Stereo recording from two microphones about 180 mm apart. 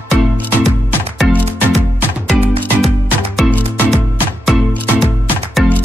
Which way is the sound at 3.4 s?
10° left (ahead or behind).